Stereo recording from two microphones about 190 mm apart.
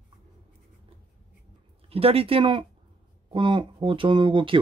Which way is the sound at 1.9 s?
30° right (ahead or behind).